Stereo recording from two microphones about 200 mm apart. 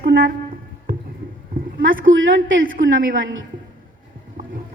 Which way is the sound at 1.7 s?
70° right (ahead or behind).